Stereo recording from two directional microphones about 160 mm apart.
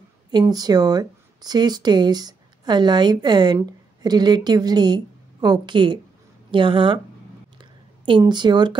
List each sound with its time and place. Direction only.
0.3 s a woman's voice: 25° right (ahead or behind)
7.5 s a sound: 30° right (ahead or behind)
8.2 s a woman's voice: 25° right (ahead or behind)